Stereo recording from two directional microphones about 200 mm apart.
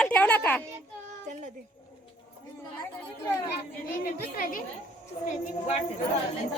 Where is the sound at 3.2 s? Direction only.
10° left (ahead or behind).